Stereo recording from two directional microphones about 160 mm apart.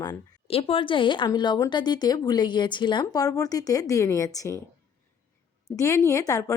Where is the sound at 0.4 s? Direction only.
35° left (ahead or behind); by 4.6 s 20° left (ahead or behind).